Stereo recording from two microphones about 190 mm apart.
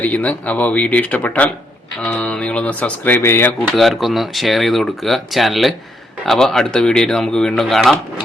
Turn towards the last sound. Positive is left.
turn(degrees=0)  # may be behind; listen again after turning